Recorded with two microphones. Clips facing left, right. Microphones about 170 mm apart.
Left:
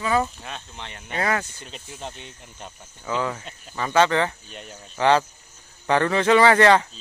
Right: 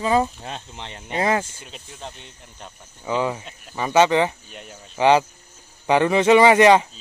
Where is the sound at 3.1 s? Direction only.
15° right (ahead or behind).